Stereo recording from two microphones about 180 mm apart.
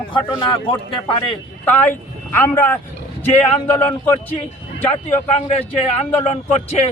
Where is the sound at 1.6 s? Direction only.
10° left (ahead or behind).